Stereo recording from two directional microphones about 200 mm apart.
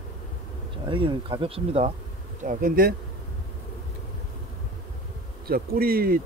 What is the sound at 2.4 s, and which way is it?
Speech, 45° right (ahead or behind).